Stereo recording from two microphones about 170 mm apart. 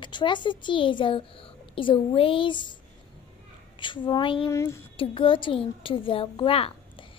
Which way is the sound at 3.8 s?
30° left (ahead or behind).